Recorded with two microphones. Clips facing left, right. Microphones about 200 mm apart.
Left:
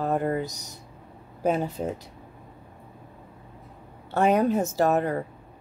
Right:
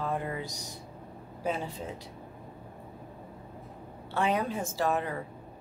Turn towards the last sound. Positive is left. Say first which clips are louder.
# left 7 dB
turn(degrees=45)  # may be behind; listen again after turning